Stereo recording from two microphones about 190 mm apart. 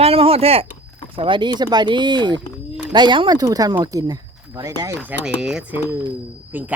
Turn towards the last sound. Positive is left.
turn(degrees=-10)  # may be behind; listen again after turning